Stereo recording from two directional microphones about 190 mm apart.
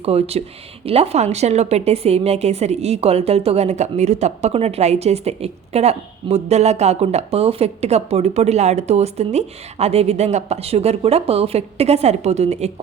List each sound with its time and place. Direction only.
0.0 s a woman's voice: 30° right (ahead or behind)